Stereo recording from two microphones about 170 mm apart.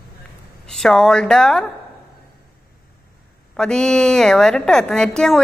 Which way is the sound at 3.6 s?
5° left (ahead or behind).